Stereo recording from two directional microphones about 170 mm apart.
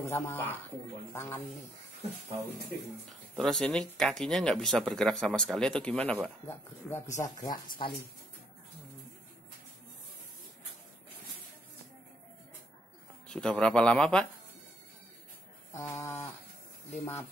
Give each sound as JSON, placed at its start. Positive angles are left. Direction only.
{"t": 0.0, "sound": "speech", "side_deg": 15}
{"t": 3.3, "sound": "speech", "side_deg": 5}
{"t": 13.3, "sound": "speech", "side_deg": 5}
{"t": 15.7, "sound": "speech", "side_deg": 15}